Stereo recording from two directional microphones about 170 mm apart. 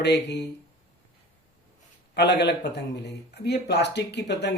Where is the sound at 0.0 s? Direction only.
80° left.